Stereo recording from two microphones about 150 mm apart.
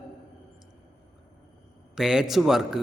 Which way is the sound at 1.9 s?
5° right (ahead or behind).